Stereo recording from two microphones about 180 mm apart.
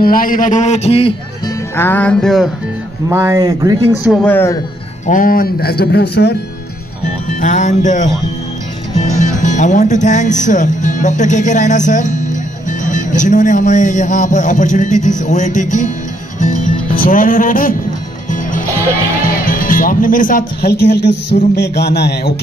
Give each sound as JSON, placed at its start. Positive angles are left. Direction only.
{"t": 0.0, "sound": "speech", "side_deg": 50}
{"t": 1.4, "sound": "music", "side_deg": 10}
{"t": 3.1, "sound": "speech", "side_deg": -15}
{"t": 4.1, "sound": "speech", "side_deg": 10}
{"t": 5.0, "sound": "speech", "side_deg": 50}
{"t": 7.2, "sound": "speech", "side_deg": 45}
{"t": 9.1, "sound": "speech", "side_deg": 45}
{"t": 16.3, "sound": "music", "side_deg": 45}
{"t": 19.2, "sound": "speech", "side_deg": 50}